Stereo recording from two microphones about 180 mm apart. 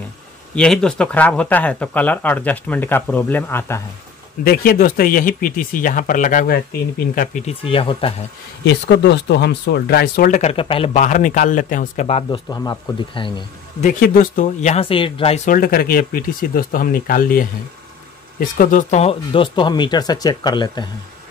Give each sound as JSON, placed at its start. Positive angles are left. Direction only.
{"t": 0.6, "sound": "speech", "side_deg": 5}
{"t": 4.5, "sound": "speech", "side_deg": 55}
{"t": 7.4, "sound": "speech", "side_deg": 30}
{"t": 8.6, "sound": "speech", "side_deg": 70}
{"t": 11.0, "sound": "speech", "side_deg": 45}
{"t": 12.4, "sound": "speech", "side_deg": 20}
{"t": 13.7, "sound": "speech", "side_deg": 50}
{"t": 15.4, "sound": "speech", "side_deg": 55}